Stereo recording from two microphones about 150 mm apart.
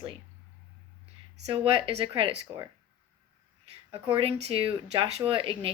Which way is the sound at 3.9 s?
35° right (ahead or behind).